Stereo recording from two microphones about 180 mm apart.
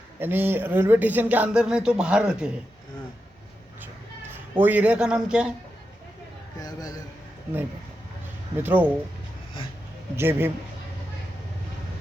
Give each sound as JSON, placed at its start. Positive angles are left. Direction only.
{"t": 0.2, "sound": "speech", "side_deg": -10}
{"t": 4.5, "sound": "speech", "side_deg": -10}
{"t": 6.6, "sound": "speech", "side_deg": 20}
{"t": 8.5, "sound": "speech", "side_deg": -10}
{"t": 10.2, "sound": "speech", "side_deg": -10}